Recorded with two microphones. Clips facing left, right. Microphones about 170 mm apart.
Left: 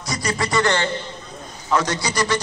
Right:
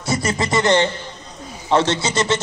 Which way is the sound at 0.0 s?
25° right (ahead or behind).